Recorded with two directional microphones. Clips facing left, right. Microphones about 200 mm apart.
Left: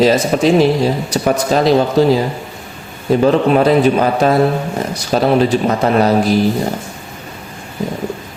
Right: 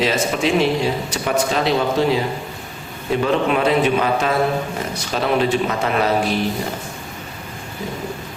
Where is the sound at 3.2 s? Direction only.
40° left (ahead or behind).